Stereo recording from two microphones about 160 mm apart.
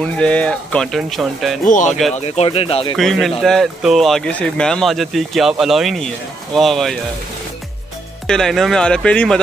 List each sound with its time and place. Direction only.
0.0 s speech: 5° left (ahead or behind)
1.6 s speech: 55° left (ahead or behind)
2.1 s speech: 40° left (ahead or behind)
3.0 s speech: centre (ahead or behind)
8.3 s speech: centre (ahead or behind)